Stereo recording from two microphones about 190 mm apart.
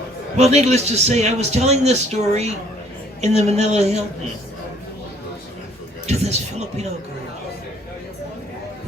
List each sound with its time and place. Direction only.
0.3 s a man's voice: 35° right (ahead or behind)
6.1 s a man's voice: 35° right (ahead or behind)